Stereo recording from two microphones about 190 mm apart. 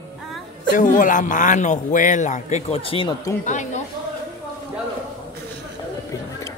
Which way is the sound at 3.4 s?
40° left (ahead or behind).